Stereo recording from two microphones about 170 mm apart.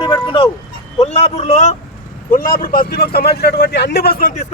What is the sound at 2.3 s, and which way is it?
A man's voice, 55° left (ahead or behind).